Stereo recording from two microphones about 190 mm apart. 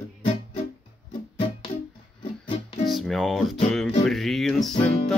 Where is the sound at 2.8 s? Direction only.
Centre (ahead or behind).